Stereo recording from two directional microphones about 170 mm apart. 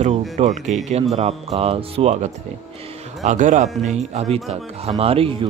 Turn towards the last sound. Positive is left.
turn(degrees=-35)  # may be behind; listen again after turning